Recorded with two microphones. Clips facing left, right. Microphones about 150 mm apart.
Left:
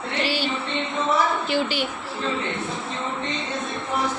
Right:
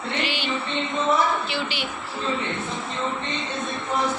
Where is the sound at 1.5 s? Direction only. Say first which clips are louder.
Left 5 dB; 45° left (ahead or behind).